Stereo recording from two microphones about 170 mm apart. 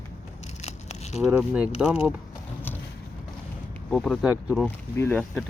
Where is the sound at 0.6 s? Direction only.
40° left (ahead or behind).